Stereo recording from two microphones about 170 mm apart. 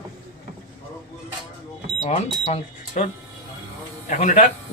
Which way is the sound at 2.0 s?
45° left (ahead or behind).